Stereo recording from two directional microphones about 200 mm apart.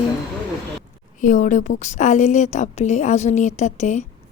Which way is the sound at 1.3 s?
40° left (ahead or behind).